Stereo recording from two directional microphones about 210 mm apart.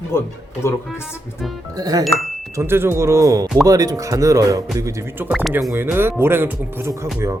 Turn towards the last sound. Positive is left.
turn(degrees=-15)  # may be behind; listen again after turning